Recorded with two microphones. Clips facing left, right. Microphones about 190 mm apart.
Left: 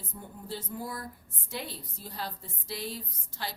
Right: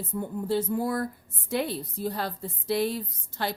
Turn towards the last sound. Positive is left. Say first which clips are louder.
# right 8 dB
turn(degrees=-60)  # may be behind; listen again after turning